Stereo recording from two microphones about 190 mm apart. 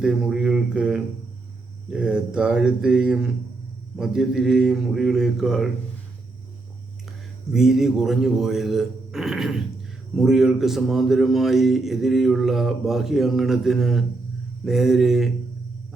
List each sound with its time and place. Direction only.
0.0 s a man's voice: 5° right (ahead or behind)
7.5 s a man's voice: centre (ahead or behind)